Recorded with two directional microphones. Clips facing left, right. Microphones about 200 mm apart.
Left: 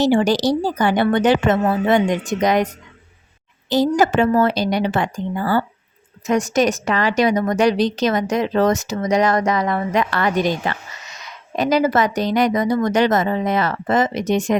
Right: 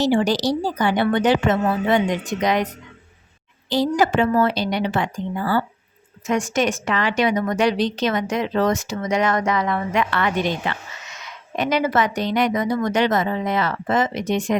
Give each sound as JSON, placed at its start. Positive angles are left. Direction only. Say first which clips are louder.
{"t": 0.0, "sound": "a woman's voice", "louder": "left 3 dB", "side_deg": 50}
{"t": 3.7, "sound": "a woman's voice", "louder": "left 3 dB", "side_deg": 45}